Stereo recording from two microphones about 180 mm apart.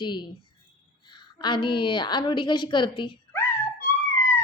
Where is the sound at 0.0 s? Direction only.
25° left (ahead or behind).